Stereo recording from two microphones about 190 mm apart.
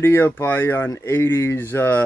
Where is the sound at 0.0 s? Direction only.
10° left (ahead or behind).